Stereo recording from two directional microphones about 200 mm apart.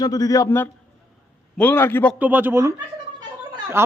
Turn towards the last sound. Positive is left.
turn(degrees=-10)  # may be behind; listen again after turning